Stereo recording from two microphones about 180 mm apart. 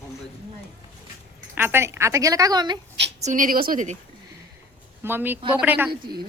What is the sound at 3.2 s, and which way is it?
Speech, 45° right (ahead or behind).